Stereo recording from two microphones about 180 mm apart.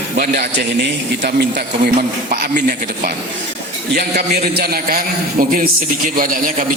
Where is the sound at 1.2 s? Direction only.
45° right (ahead or behind).